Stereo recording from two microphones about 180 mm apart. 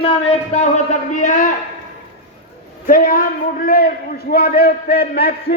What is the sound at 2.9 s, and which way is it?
A man's voice, 50° left (ahead or behind).